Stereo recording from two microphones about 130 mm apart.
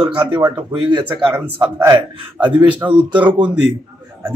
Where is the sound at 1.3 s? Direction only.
10° right (ahead or behind).